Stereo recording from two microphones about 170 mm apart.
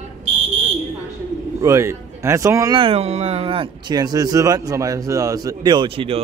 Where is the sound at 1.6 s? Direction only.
15° right (ahead or behind).